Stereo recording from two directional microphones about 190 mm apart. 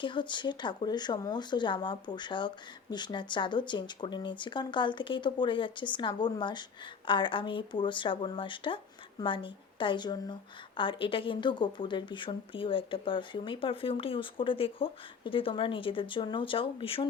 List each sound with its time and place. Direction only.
0.0 s a woman's voice: 25° left (ahead or behind)